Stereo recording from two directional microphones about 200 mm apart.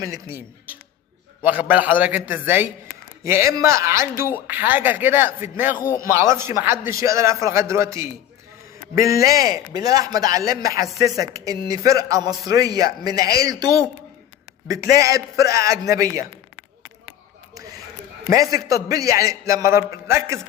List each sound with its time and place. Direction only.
0.0 s a man's voice: 15° right (ahead or behind)
1.5 s a man's voice: 5° right (ahead or behind)
9.2 s a man's voice: 15° right (ahead or behind)
14.9 s a man's voice: 15° right (ahead or behind)
18.3 s a man's voice: 15° right (ahead or behind)